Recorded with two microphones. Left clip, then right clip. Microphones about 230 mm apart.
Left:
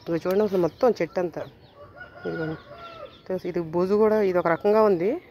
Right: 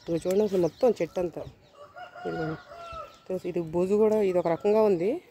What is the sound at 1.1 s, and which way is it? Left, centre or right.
Speech, centre.